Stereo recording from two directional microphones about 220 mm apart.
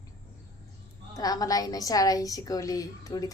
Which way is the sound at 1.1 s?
15° left (ahead or behind).